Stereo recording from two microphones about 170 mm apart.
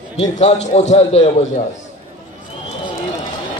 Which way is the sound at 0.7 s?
40° left (ahead or behind).